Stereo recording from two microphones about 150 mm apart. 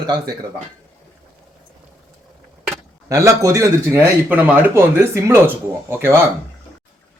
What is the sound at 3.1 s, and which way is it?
Speech, 20° right (ahead or behind).